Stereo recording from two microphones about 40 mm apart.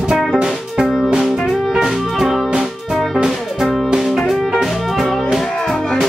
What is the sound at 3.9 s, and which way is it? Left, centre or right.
Music, centre.